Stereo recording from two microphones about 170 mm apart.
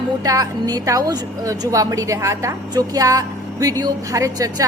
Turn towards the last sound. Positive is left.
turn(degrees=-20)  # may be behind; listen again after turning